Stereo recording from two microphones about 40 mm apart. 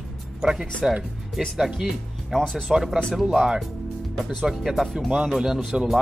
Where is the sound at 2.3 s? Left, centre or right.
Centre.